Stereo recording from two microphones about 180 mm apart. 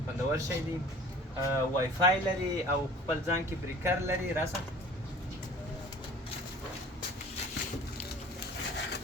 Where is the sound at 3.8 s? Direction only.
10° right (ahead or behind).